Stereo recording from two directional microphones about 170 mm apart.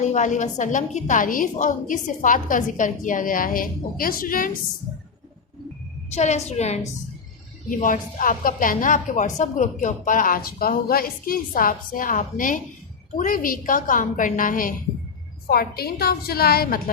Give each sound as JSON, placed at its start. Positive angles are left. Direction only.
{"t": 0.0, "sound": "a woman's voice", "side_deg": 45}
{"t": 6.1, "sound": "a woman's voice", "side_deg": 40}
{"t": 7.7, "sound": "a woman's voice", "side_deg": 50}